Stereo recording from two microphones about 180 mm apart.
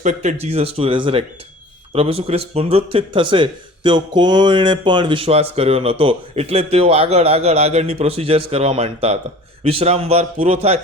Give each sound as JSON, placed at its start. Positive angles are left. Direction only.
{"t": 0.0, "sound": "speech", "side_deg": -40}